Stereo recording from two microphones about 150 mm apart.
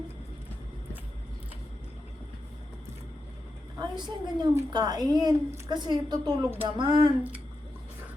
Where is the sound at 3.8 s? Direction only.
30° right (ahead or behind).